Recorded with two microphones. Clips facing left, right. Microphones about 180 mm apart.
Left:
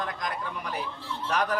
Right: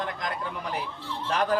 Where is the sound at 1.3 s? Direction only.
30° right (ahead or behind).